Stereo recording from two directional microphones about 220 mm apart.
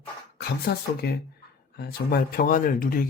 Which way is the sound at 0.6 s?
45° left (ahead or behind).